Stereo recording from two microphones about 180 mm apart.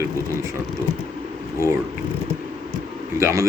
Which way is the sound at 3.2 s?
20° right (ahead or behind).